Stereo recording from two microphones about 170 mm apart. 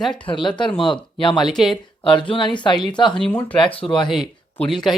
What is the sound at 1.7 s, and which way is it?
Speech, 30° left (ahead or behind).